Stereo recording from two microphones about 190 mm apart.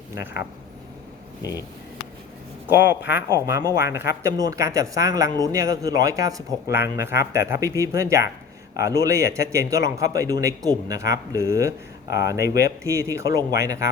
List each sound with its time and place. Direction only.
1.4 s speech: 20° left (ahead or behind)
2.6 s speech: 10° right (ahead or behind)